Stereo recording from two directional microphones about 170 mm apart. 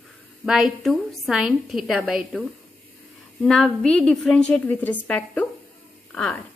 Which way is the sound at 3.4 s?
Centre (ahead or behind).